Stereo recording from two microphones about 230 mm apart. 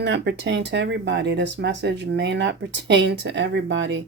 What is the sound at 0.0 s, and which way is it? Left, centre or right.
Speech, right.